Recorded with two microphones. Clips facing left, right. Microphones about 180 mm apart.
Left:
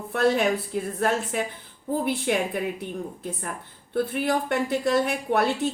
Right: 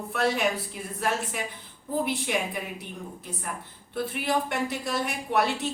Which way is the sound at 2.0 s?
55° left (ahead or behind).